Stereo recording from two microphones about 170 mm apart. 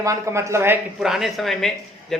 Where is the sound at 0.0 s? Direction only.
15° right (ahead or behind).